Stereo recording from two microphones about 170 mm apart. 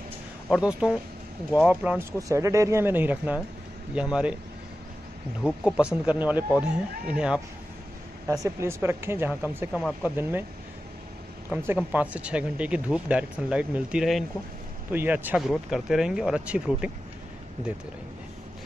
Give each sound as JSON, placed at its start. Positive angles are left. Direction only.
{"t": 0.5, "sound": "speech", "side_deg": -5}
{"t": 5.4, "sound": "speech", "side_deg": -5}
{"t": 8.3, "sound": "speech", "side_deg": -20}
{"t": 9.7, "sound": "speech", "side_deg": 0}
{"t": 10.0, "sound": "speech", "side_deg": -10}
{"t": 11.5, "sound": "speech", "side_deg": -10}